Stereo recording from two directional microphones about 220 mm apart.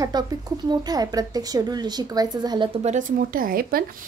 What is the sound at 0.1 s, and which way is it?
A woman's voice, 20° right (ahead or behind).